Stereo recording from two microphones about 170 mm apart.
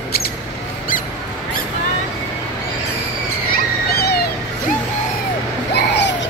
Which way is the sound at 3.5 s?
65° left (ahead or behind).